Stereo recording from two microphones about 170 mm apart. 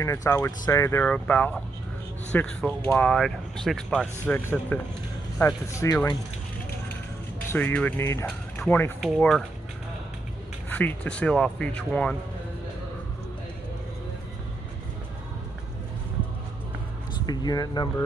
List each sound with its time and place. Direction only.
0.0 s speech: 15° left (ahead or behind)
7.4 s speech: 10° left (ahead or behind)
10.7 s speech: 10° left (ahead or behind)
17.3 s speech: 25° left (ahead or behind)